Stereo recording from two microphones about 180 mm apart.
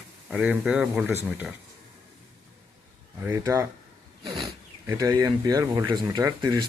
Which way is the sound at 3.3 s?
20° right (ahead or behind).